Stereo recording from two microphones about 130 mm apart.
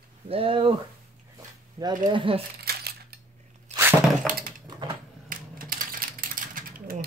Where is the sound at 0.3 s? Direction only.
45° right (ahead or behind).